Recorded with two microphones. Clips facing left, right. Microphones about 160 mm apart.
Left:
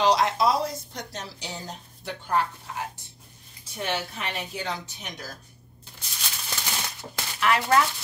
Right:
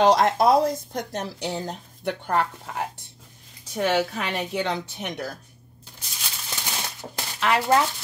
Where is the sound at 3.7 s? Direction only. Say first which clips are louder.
Right 8 dB; 85° right; by 5.3 s 60° right (ahead or behind).